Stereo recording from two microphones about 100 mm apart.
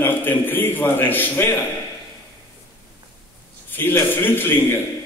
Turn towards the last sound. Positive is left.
turn(degrees=20)  # may be behind; listen again after turning